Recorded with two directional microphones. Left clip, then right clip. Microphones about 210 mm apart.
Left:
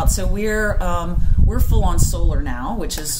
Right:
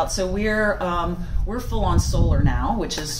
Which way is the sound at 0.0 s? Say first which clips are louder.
Right 1 dB; 60° left (ahead or behind).